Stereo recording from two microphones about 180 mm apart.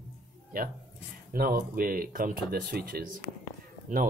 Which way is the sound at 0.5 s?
55° right (ahead or behind).